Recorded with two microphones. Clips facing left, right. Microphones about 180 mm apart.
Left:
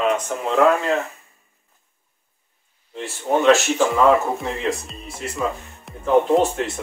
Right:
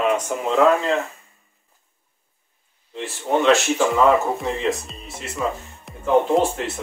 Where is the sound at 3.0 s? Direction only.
Centre (ahead or behind).